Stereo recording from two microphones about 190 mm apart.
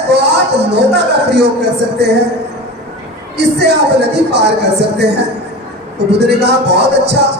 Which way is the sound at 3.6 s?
60° right (ahead or behind).